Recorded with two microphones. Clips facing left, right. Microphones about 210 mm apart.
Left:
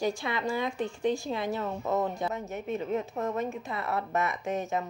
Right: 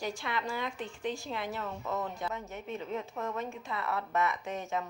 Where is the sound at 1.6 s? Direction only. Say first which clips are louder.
Left 6 dB; 35° left (ahead or behind).